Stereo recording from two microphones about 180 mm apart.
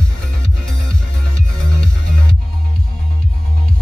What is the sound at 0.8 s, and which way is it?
Music, 5° left (ahead or behind).